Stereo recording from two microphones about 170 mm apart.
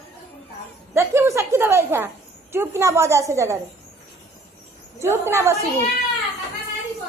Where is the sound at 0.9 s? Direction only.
15° right (ahead or behind).